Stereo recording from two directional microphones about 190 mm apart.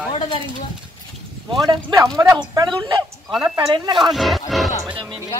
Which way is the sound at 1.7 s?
20° right (ahead or behind).